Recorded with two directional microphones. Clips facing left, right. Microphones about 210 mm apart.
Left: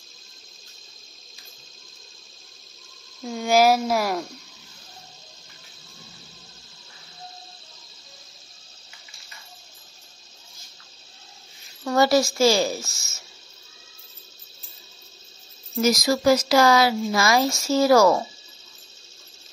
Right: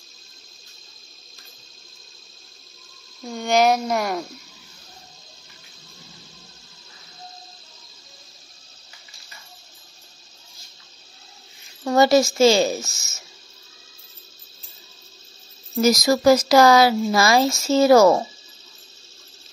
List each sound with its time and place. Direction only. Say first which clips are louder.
3.2 s speech: even; centre (ahead or behind)
11.8 s speech: right 3 dB; 20° right (ahead or behind)
15.8 s speech: right 3 dB; 40° right (ahead or behind); by 18.2 s 25° right (ahead or behind)